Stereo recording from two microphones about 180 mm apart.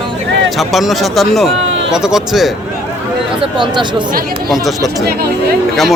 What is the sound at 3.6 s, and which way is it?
Speech, 25° right (ahead or behind).